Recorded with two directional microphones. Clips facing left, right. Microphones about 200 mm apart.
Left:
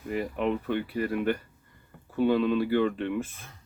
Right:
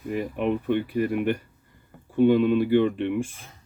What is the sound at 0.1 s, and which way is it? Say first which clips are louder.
Speech: right 2 dB; 15° right (ahead or behind).